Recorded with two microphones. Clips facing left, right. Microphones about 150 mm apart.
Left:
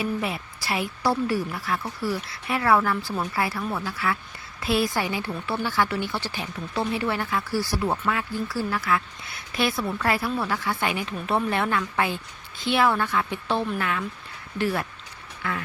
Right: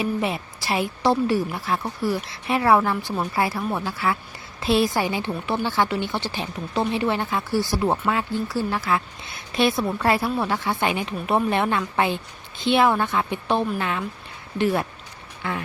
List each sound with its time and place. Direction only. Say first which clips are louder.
0.0 s speech: right 3 dB; 25° right (ahead or behind)